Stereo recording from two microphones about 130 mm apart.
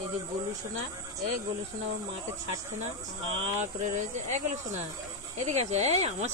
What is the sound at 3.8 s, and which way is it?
Speech, 70° right (ahead or behind).